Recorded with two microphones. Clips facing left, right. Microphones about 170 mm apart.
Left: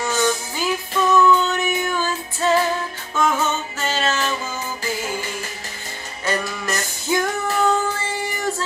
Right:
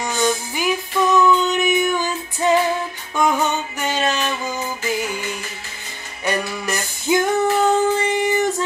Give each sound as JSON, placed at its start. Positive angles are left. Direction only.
{"t": 0.0, "sound": "music", "side_deg": -15}
{"t": 6.2, "sound": "female singing", "side_deg": -15}